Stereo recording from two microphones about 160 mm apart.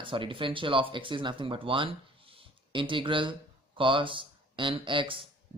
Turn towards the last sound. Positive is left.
turn(degrees=-30)  # may be behind; listen again after turning